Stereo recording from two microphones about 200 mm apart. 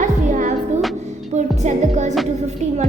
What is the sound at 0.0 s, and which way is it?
Music, 40° right (ahead or behind).